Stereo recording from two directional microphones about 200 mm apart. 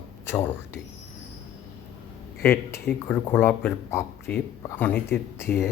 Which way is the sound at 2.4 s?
10° left (ahead or behind).